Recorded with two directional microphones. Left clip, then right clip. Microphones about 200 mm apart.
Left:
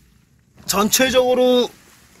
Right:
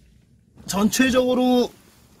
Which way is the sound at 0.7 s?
5° left (ahead or behind).